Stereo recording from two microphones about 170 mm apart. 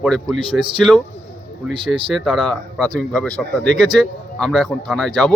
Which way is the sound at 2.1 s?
Centre (ahead or behind).